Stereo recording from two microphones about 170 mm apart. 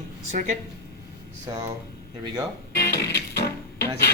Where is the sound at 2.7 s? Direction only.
70° left (ahead or behind).